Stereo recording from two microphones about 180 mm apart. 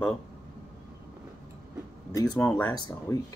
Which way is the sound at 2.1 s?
20° left (ahead or behind).